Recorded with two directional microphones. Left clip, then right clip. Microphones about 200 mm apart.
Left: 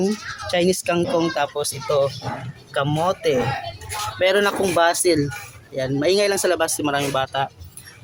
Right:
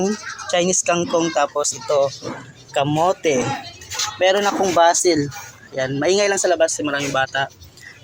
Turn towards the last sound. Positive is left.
turn(degrees=15)  # may be behind; listen again after turning